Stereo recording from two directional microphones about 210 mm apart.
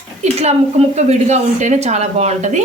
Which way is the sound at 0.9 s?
35° right (ahead or behind).